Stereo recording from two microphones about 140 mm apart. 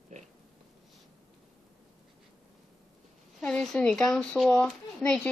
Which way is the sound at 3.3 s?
5° left (ahead or behind).